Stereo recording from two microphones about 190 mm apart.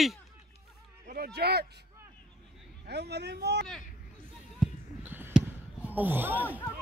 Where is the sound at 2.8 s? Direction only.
60° right (ahead or behind).